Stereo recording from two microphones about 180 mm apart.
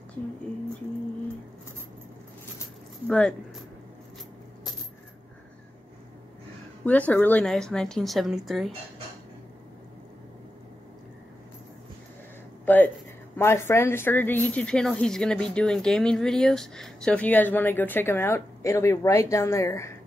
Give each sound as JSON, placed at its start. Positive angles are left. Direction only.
{"t": 3.1, "sound": "a woman's voice", "side_deg": 5}
{"t": 6.8, "sound": "a woman's voice", "side_deg": 10}
{"t": 12.6, "sound": "a woman's voice", "side_deg": 10}